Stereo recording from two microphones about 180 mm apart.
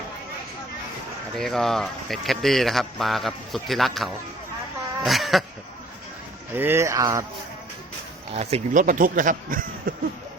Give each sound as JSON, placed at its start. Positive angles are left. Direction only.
{"t": 1.4, "sound": "a man's voice", "side_deg": 0}
{"t": 6.5, "sound": "speech", "side_deg": -10}
{"t": 8.3, "sound": "speech", "side_deg": -35}